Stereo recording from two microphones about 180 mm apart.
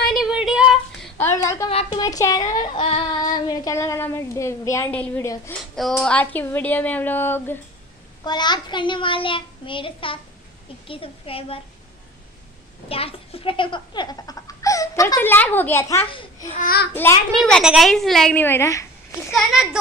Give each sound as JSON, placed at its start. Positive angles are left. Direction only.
{"t": 0.1, "sound": "a sound", "side_deg": -5}
{"t": 1.1, "sound": "a woman's voice", "side_deg": 15}
{"t": 8.2, "sound": "a child's voice", "side_deg": 25}
{"t": 12.8, "sound": "a child's voice", "side_deg": 30}
{"t": 16.1, "sound": "speech", "side_deg": 30}
{"t": 16.5, "sound": "a child's voice", "side_deg": 55}
{"t": 16.9, "sound": "a child's voice", "side_deg": 10}
{"t": 19.3, "sound": "a child's voice", "side_deg": -5}